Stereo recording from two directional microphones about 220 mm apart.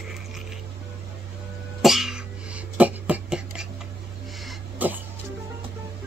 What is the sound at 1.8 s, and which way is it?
Cough, centre (ahead or behind).